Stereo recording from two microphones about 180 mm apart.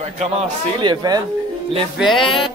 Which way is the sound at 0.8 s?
25° right (ahead or behind).